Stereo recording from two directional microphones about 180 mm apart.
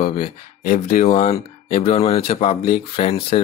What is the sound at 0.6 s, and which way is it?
Speech, 50° left (ahead or behind).